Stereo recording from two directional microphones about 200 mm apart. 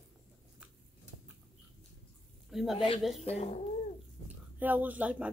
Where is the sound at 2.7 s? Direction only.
25° left (ahead or behind).